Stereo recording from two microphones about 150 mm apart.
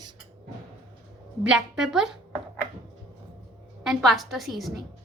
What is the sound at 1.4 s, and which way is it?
Speech, 5° right (ahead or behind).